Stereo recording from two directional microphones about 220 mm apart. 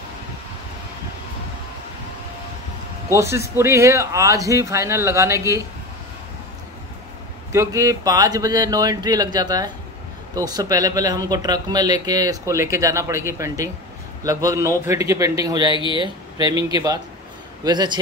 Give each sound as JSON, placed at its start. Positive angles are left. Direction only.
{"t": 3.2, "sound": "speech", "side_deg": -10}
{"t": 7.5, "sound": "speech", "side_deg": -15}